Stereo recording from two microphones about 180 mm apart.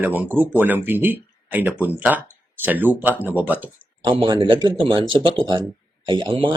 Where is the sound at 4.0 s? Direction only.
25° right (ahead or behind).